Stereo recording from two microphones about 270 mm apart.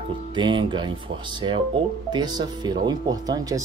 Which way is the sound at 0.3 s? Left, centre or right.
Centre.